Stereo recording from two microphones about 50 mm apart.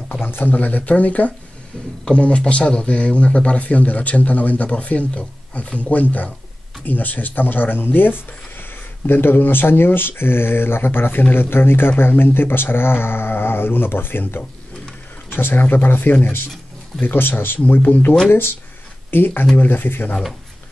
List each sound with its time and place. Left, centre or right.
0.1 s speech: left